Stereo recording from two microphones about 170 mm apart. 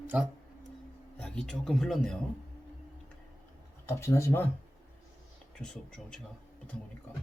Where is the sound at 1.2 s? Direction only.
5° left (ahead or behind).